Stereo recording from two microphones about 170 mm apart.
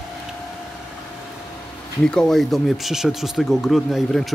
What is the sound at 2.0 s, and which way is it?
Speech, 5° left (ahead or behind).